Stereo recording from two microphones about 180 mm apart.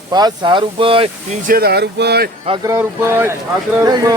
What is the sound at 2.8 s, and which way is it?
Speech, 15° right (ahead or behind).